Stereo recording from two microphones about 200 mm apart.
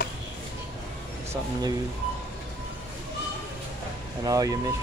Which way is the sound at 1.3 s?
20° right (ahead or behind).